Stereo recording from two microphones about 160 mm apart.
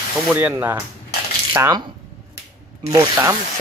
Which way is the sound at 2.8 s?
15° right (ahead or behind).